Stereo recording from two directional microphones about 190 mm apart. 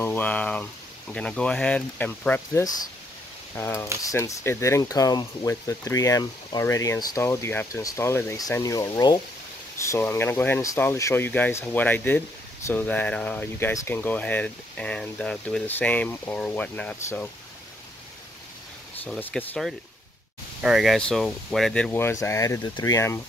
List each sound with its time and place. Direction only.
0.0 s speech: 10° left (ahead or behind)
19.0 s speech: 5° left (ahead or behind)
21.9 s speech: 15° left (ahead or behind)